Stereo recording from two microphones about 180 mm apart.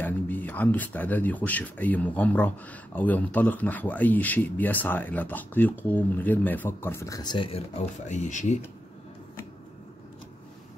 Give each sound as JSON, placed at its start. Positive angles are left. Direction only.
{"t": 0.0, "sound": "speech", "side_deg": 10}
{"t": 8.0, "sound": "speech", "side_deg": 40}